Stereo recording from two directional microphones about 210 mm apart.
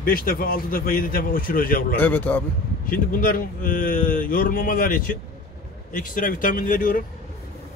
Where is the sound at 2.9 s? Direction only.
40° left (ahead or behind).